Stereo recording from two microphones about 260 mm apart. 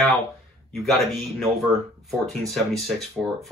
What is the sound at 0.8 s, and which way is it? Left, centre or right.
Speech, centre.